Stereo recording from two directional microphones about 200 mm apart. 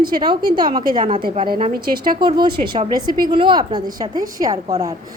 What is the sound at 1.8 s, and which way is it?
Speech, 50° right (ahead or behind).